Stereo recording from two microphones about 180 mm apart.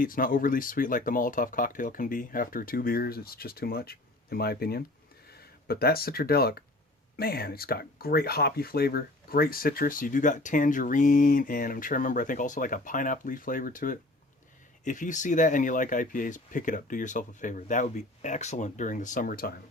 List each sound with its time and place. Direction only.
0.0 s speech: 50° left (ahead or behind)